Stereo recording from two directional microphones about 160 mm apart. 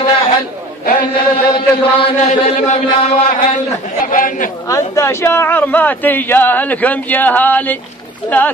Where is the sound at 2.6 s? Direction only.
45° left (ahead or behind).